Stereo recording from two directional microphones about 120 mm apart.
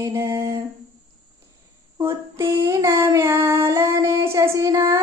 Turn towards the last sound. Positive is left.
turn(degrees=-25)  # may be behind; listen again after turning